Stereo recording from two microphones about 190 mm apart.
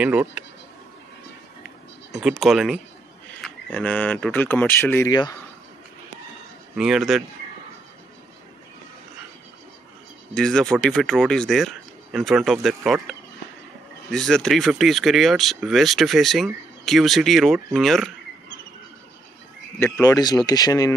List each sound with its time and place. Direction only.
0.0 s speech: 10° right (ahead or behind)
2.1 s speech: centre (ahead or behind)
6.8 s speech: centre (ahead or behind)
10.3 s speech: 5° left (ahead or behind)
14.1 s speech: 5° left (ahead or behind)
19.8 s speech: 15° left (ahead or behind)